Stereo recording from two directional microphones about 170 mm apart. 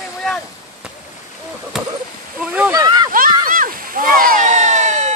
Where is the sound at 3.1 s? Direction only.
55° right (ahead or behind).